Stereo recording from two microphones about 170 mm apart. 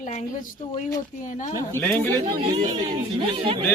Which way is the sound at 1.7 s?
10° left (ahead or behind).